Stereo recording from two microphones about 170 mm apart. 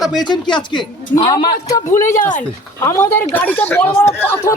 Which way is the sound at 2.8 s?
15° left (ahead or behind).